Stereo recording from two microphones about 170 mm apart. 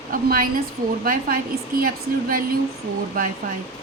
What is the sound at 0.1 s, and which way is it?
A woman's voice, 55° right (ahead or behind).